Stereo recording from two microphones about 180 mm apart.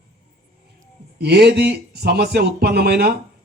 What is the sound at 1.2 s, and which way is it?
Speech, 65° right (ahead or behind).